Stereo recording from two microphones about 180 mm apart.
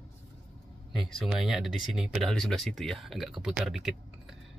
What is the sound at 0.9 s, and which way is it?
Speech, centre (ahead or behind).